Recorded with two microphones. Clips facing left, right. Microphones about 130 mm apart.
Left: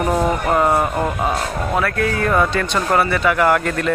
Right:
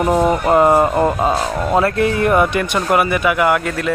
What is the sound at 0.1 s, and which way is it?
Speech, 20° right (ahead or behind).